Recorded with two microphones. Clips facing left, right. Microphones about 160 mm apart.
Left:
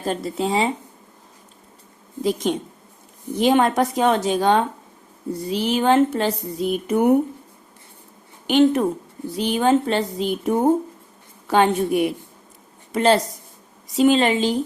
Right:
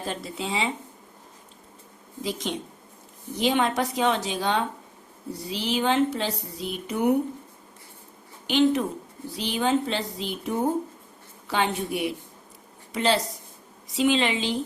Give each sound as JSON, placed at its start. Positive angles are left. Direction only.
{"t": 0.0, "sound": "speech", "side_deg": 45}
{"t": 2.2, "sound": "speech", "side_deg": 50}
{"t": 8.4, "sound": "speech", "side_deg": 50}